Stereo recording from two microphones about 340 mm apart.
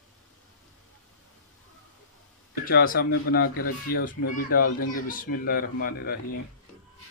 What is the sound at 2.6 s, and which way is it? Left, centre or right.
Speech, left.